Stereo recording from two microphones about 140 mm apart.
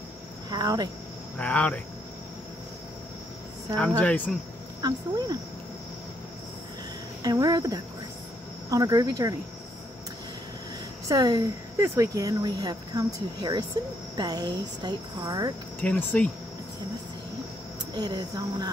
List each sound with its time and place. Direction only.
0.5 s speech: 30° right (ahead or behind)
1.4 s speech: 10° left (ahead or behind)
4.0 s speech: 10° left (ahead or behind)
4.8 s speech: 30° right (ahead or behind)
7.2 s speech: 25° right (ahead or behind)
11.1 s a woman's voice: 30° right (ahead or behind)
15.8 s speech: 10° left (ahead or behind)
17.9 s speech: 30° right (ahead or behind)